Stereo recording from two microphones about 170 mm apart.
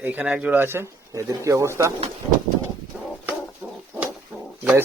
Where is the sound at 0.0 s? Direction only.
10° right (ahead or behind).